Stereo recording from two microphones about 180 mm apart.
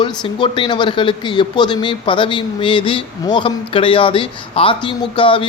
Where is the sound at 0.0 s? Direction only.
25° left (ahead or behind).